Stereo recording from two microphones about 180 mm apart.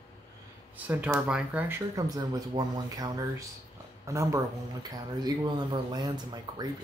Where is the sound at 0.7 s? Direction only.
10° right (ahead or behind).